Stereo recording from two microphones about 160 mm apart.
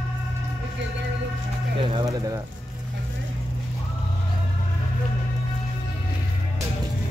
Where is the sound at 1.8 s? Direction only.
35° right (ahead or behind).